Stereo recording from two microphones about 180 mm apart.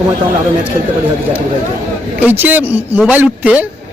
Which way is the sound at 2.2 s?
10° right (ahead or behind).